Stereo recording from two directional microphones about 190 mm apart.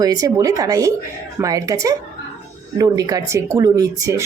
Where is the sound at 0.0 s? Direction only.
20° right (ahead or behind).